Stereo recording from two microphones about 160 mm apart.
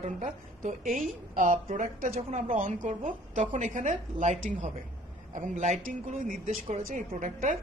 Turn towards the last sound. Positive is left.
turn(degrees=-55)  # may be behind; listen again after turning